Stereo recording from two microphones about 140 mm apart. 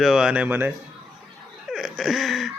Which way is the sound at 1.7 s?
Centre (ahead or behind).